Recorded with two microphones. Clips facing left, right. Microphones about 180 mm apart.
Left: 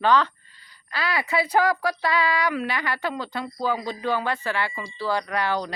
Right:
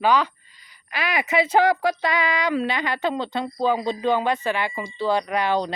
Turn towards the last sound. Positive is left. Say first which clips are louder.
# right 3 dB
turn(degrees=-20)  # may be behind; listen again after turning